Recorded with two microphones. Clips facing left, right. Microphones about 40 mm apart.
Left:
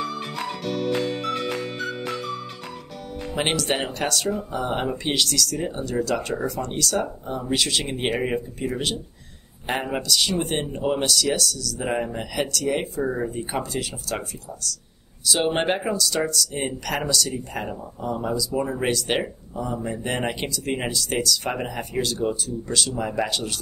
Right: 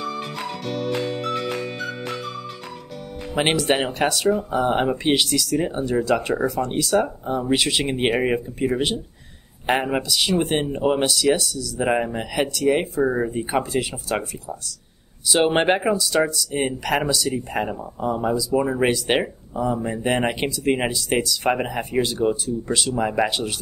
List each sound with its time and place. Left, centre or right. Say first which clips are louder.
0.7 s music: left 1 dB; centre
3.3 s speech: right 4 dB; centre